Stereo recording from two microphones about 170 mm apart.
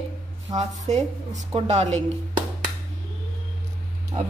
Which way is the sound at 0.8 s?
45° right (ahead or behind).